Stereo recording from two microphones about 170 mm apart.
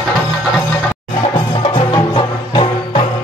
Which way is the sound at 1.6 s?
35° left (ahead or behind).